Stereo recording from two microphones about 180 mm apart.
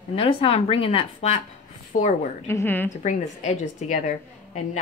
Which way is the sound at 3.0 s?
40° left (ahead or behind).